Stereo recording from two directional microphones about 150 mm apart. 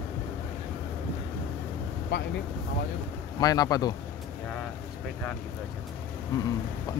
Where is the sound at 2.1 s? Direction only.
90° left.